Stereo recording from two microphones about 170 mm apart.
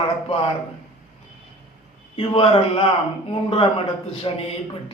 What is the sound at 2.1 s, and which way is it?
A man's voice, 35° left (ahead or behind).